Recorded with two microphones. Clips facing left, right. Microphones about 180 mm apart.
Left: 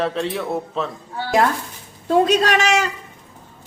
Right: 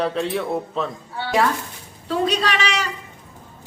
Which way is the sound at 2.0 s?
45° left (ahead or behind).